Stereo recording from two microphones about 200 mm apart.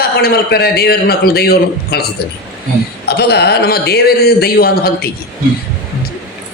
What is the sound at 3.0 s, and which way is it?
Speech, 55° left (ahead or behind).